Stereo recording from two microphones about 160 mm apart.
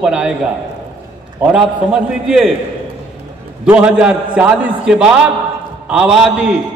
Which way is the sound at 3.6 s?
5° right (ahead or behind).